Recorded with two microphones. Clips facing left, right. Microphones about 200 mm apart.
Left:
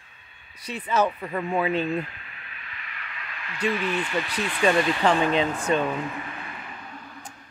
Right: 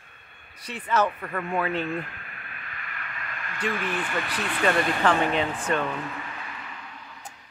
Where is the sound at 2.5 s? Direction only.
50° right (ahead or behind).